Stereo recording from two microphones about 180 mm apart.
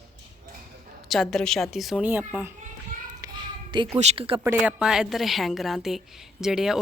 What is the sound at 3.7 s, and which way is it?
Speech, 25° right (ahead or behind).